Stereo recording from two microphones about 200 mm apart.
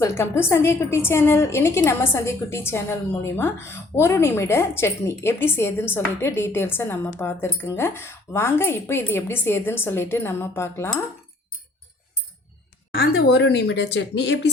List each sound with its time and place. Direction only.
0.0 s a woman's voice: 15° left (ahead or behind)
13.1 s speech: 60° left (ahead or behind)